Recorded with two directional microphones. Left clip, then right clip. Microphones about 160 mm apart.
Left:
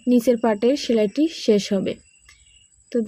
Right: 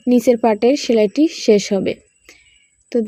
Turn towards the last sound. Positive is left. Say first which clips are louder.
# right 5 dB
turn(degrees=-25)  # may be behind; listen again after turning